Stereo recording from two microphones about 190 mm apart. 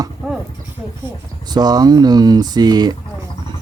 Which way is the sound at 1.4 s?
20° right (ahead or behind).